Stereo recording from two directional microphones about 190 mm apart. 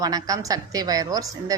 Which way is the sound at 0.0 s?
20° right (ahead or behind).